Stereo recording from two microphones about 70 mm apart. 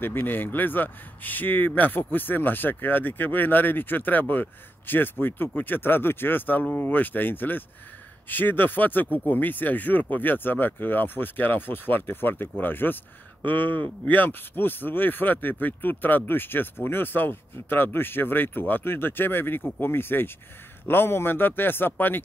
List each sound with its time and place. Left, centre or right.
0.0 s speech: left